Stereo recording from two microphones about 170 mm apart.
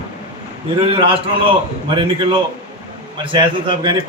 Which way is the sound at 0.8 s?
30° right (ahead or behind).